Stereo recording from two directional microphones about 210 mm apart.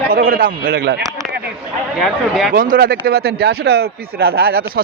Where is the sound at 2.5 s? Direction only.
45° right (ahead or behind).